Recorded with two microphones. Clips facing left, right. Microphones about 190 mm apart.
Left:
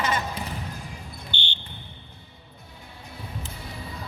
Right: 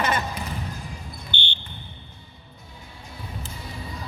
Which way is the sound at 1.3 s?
55° right (ahead or behind).